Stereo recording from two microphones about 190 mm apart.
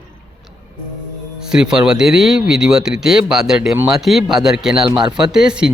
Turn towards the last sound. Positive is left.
turn(degrees=-5)  # may be behind; listen again after turning